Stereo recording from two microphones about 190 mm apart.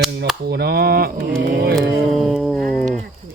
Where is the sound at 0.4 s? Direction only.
55° right (ahead or behind).